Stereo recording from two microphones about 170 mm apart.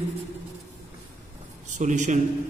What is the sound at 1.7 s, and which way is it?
Speech, 45° right (ahead or behind).